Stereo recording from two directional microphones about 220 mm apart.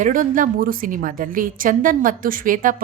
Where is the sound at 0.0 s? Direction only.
35° right (ahead or behind).